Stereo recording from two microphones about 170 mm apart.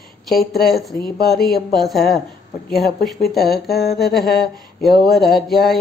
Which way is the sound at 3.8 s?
65° left (ahead or behind).